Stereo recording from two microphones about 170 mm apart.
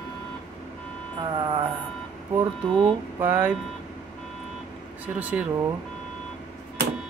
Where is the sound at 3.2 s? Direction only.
10° right (ahead or behind).